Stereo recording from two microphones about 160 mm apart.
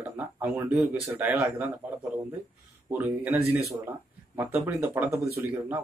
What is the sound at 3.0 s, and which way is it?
Speech, 10° right (ahead or behind).